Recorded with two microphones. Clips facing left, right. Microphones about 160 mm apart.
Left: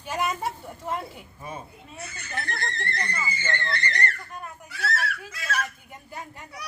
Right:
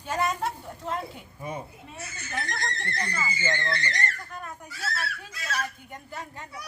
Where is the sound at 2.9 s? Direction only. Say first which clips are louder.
Even; 60° left (ahead or behind).